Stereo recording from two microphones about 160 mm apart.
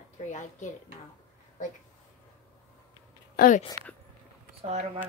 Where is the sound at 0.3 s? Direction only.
50° left (ahead or behind).